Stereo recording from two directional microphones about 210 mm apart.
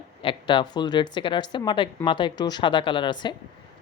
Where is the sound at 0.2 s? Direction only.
25° left (ahead or behind).